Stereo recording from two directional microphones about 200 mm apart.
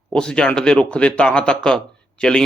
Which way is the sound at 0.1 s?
5° left (ahead or behind).